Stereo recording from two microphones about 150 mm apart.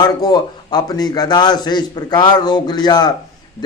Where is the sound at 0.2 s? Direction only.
25° left (ahead or behind).